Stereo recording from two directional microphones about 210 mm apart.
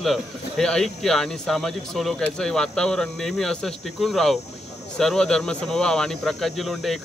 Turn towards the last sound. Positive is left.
turn(degrees=0)  # may be behind; listen again after turning